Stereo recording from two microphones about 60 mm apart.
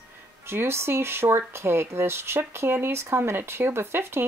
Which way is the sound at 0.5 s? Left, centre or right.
Right.